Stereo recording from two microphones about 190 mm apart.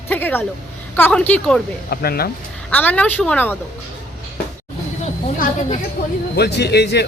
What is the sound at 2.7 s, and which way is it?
Speech, 10° left (ahead or behind).